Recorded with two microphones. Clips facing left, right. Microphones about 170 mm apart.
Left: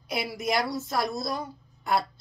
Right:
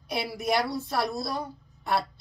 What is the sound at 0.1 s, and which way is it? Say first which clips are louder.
Speech: right 1 dB; 30° right (ahead or behind).